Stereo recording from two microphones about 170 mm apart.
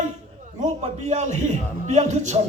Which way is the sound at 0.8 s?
40° right (ahead or behind).